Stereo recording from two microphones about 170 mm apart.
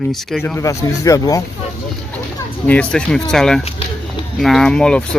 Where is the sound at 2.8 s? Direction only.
5° left (ahead or behind).